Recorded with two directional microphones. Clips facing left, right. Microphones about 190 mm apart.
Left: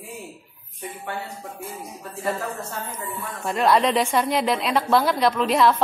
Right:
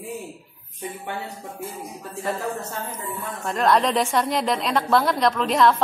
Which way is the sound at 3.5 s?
Centre (ahead or behind).